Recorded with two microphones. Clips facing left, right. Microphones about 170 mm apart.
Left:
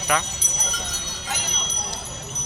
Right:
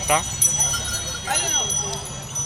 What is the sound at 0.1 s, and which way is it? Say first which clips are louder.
Speech: right 2 dB; 20° right (ahead or behind).